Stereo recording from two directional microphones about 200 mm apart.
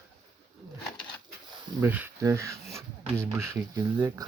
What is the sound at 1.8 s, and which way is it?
Speech, 10° right (ahead or behind).